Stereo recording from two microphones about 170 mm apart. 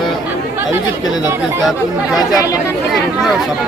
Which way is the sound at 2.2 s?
20° left (ahead or behind).